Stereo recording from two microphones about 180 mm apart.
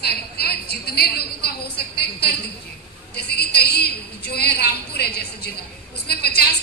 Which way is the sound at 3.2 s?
65° left (ahead or behind).